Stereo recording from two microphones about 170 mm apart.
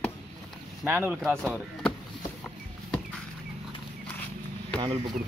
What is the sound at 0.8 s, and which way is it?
Speech, 10° right (ahead or behind).